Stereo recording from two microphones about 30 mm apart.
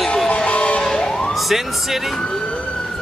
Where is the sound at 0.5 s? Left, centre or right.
Left.